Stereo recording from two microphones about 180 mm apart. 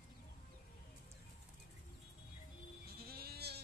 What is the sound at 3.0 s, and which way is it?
Sheep, 60° right (ahead or behind).